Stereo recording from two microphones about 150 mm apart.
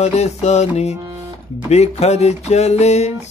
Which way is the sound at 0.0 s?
45° left (ahead or behind).